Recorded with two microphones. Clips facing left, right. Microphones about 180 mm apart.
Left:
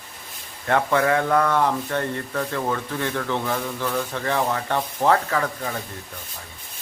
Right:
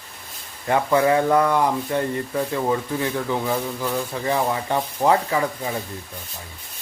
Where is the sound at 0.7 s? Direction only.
10° right (ahead or behind).